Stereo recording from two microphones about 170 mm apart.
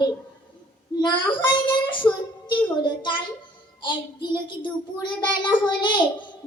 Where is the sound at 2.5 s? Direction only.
25° left (ahead or behind).